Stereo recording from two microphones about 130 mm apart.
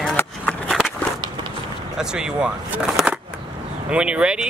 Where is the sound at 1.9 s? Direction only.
5° right (ahead or behind).